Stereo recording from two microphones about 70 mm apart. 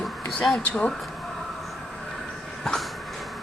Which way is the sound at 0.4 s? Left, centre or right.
Centre.